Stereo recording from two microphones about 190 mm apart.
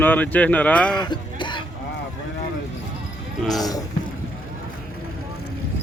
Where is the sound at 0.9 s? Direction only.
25° left (ahead or behind).